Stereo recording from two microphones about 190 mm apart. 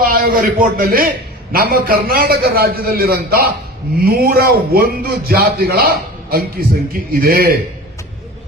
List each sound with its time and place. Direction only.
0.0 s a man's voice: 50° right (ahead or behind)